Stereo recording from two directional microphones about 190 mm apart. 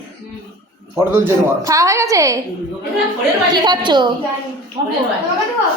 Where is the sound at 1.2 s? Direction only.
15° right (ahead or behind).